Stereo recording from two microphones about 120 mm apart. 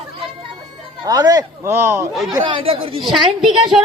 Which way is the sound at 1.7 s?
20° right (ahead or behind).